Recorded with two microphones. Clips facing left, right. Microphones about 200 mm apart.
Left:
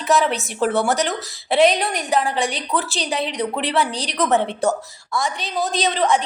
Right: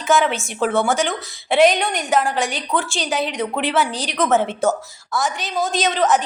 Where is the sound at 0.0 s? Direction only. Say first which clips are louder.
Right 1 dB; centre (ahead or behind).